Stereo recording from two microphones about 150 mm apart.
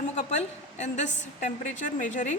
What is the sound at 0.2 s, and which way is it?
A woman's voice, 50° left (ahead or behind).